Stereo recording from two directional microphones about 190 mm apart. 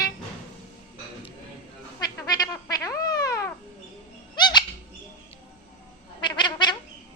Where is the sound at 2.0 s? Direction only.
20° left (ahead or behind).